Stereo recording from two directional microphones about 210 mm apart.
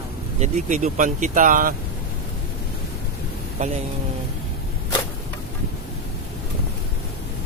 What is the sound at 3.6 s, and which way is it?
Speech, 35° right (ahead or behind).